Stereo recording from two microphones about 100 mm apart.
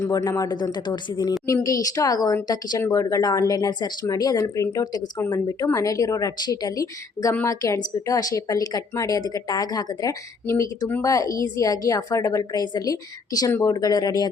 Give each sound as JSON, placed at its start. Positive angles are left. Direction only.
{"t": 0.1, "sound": "a woman's voice", "side_deg": 40}
{"t": 10.4, "sound": "speech", "side_deg": 25}
{"t": 11.0, "sound": "a woman's voice", "side_deg": 35}